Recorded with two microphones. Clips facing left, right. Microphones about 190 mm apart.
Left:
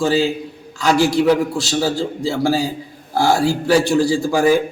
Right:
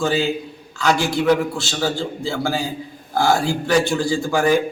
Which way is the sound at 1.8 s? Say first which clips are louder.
Left 3 dB; 35° left (ahead or behind).